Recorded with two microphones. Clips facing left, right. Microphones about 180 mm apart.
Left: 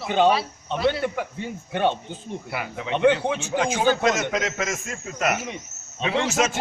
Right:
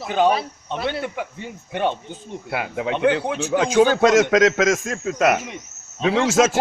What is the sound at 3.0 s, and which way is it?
Speech, 5° right (ahead or behind).